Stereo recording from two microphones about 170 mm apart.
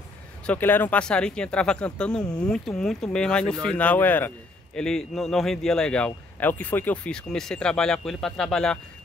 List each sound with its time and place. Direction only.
0.5 s a man's voice: 10° left (ahead or behind)